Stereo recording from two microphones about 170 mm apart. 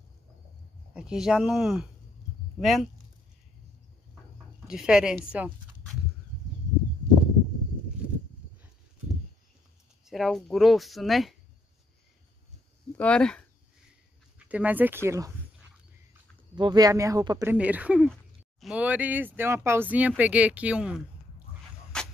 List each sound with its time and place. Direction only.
0.9 s speech: 5° right (ahead or behind)
4.6 s speech: 5° right (ahead or behind)
10.0 s speech: centre (ahead or behind)
12.9 s speech: 5° left (ahead or behind)
14.5 s speech: 10° right (ahead or behind)
16.5 s speech: 25° right (ahead or behind); by 21.0 s 5° right (ahead or behind)
21.9 s a sound: 5° left (ahead or behind)